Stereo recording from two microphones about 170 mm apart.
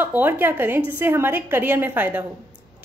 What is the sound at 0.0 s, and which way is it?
A woman's voice, 10° right (ahead or behind).